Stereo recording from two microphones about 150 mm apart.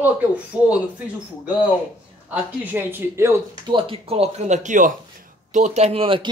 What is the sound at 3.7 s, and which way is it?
Speech, 35° right (ahead or behind).